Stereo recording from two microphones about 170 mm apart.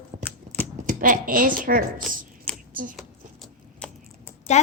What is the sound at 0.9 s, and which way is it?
Speech, 50° right (ahead or behind).